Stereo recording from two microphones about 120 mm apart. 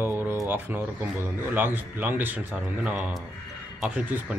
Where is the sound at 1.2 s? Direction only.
15° right (ahead or behind).